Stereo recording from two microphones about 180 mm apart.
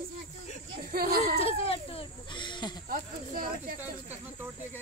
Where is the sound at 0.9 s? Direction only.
55° right (ahead or behind).